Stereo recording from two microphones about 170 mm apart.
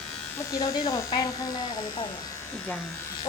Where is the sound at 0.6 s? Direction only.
20° left (ahead or behind).